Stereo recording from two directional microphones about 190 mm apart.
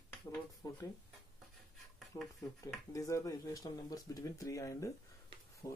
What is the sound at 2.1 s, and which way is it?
Speech, 20° left (ahead or behind).